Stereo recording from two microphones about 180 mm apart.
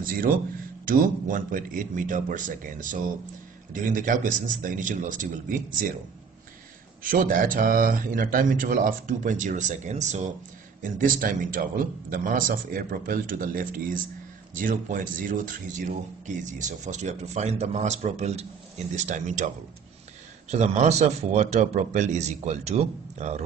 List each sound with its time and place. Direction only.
0.0 s speech: 50° right (ahead or behind)
7.0 s speech: 50° right (ahead or behind)